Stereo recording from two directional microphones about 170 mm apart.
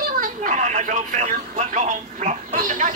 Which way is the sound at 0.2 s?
50° right (ahead or behind).